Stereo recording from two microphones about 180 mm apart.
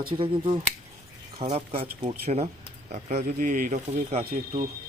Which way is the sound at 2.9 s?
45° right (ahead or behind).